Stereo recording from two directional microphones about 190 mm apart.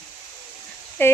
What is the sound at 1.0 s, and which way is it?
Speech, 10° left (ahead or behind).